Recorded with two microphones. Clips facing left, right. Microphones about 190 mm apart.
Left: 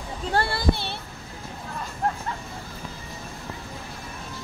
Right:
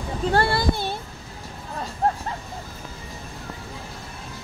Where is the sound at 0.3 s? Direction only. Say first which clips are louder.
Right 2 dB; 65° right (ahead or behind).